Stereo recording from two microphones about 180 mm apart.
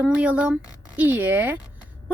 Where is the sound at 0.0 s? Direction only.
10° right (ahead or behind).